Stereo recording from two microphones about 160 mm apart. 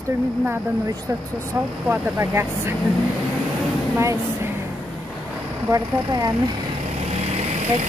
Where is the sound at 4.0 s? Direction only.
20° right (ahead or behind).